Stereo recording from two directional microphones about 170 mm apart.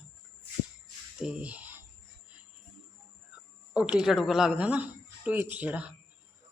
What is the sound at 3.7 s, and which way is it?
Speech, 5° right (ahead or behind).